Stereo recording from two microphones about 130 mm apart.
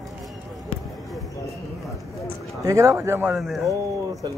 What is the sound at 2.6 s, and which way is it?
Speech, 25° right (ahead or behind).